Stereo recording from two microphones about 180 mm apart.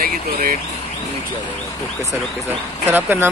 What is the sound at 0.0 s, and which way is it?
Speech, 55° right (ahead or behind).